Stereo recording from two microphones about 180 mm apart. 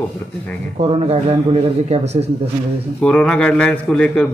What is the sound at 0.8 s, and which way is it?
A man's voice, 35° right (ahead or behind).